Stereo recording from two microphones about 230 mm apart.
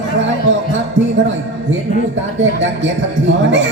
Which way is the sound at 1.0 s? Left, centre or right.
Right.